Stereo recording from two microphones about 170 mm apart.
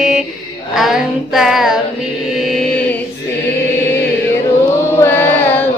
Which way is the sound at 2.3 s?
Centre (ahead or behind).